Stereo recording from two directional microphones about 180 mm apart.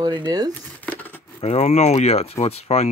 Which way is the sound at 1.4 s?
35° left (ahead or behind).